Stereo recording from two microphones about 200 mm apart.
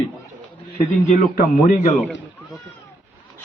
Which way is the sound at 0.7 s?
50° left (ahead or behind).